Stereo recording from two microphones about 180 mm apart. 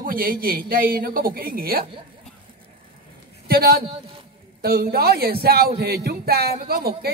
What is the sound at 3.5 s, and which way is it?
A man's voice, 55° right (ahead or behind).